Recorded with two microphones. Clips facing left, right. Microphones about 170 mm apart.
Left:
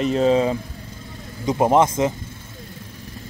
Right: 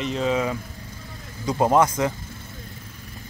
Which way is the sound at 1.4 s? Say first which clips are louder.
Left 2 dB; 20° left (ahead or behind).